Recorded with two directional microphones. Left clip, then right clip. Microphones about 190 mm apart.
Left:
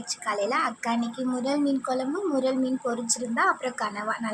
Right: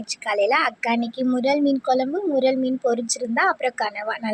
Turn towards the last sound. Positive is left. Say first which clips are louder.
# right 4 dB
turn(degrees=-25)  # may be behind; listen again after turning